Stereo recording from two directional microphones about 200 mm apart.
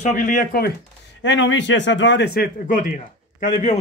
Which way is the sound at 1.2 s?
65° left (ahead or behind).